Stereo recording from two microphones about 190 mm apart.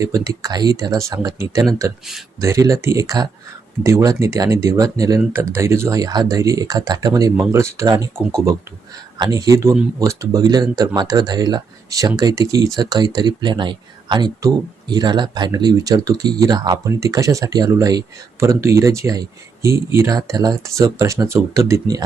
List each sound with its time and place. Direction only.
0.0 s speech: 15° right (ahead or behind)
9.1 s speech: 20° right (ahead or behind)